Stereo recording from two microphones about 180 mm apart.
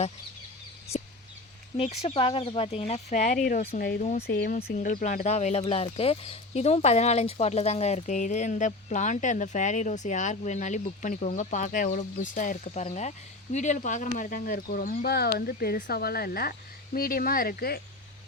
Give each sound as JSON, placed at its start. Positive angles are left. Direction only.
{"t": 1.7, "sound": "speech", "side_deg": 35}